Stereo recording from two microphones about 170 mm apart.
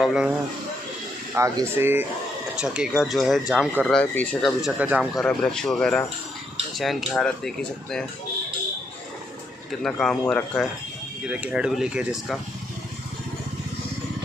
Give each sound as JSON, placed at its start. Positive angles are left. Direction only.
{"t": 0.0, "sound": "speech", "side_deg": -5}
{"t": 1.4, "sound": "speech", "side_deg": -15}
{"t": 4.6, "sound": "speech", "side_deg": -5}
{"t": 5.2, "sound": "speech", "side_deg": 5}
{"t": 9.8, "sound": "speech", "side_deg": 5}
{"t": 11.2, "sound": "speech", "side_deg": -5}